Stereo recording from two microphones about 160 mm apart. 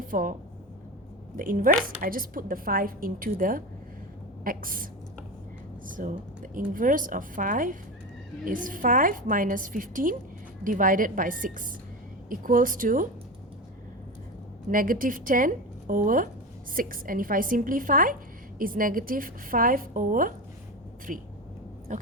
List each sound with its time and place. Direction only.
0.1 s a woman's voice: 55° right (ahead or behind)
1.4 s a woman's voice: 60° right (ahead or behind)
14.7 s a woman's voice: 60° right (ahead or behind)